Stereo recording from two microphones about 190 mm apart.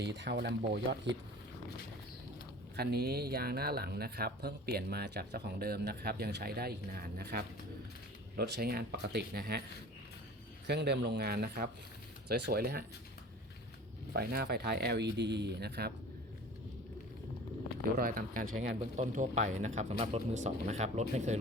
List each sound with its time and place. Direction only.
0.0 s speech: 60° right (ahead or behind)
2.7 s speech: 55° right (ahead or behind)
10.7 s speech: 60° right (ahead or behind)
14.2 s speech: 55° right (ahead or behind)
17.9 s speech: 45° right (ahead or behind)